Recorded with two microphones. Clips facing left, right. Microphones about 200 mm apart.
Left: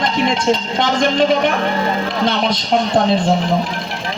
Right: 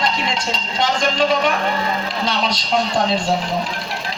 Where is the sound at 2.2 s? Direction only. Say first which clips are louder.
Left 5 dB; 55° left (ahead or behind).